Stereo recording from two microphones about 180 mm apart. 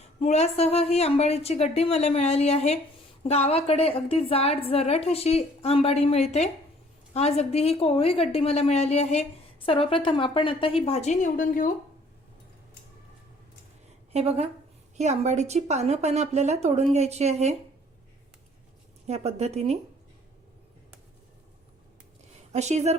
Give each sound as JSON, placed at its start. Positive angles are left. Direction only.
{"t": 0.2, "sound": "a woman's voice", "side_deg": 35}
{"t": 14.1, "sound": "a woman's voice", "side_deg": -35}
{"t": 19.0, "sound": "a woman's voice", "side_deg": -35}
{"t": 22.5, "sound": "a woman's voice", "side_deg": -40}